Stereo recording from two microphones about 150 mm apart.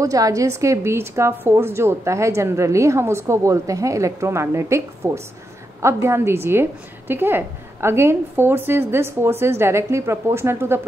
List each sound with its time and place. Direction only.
0.0 s a woman's voice: 20° right (ahead or behind)